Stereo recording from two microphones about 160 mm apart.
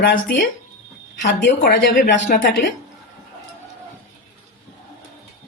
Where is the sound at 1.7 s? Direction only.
60° left (ahead or behind).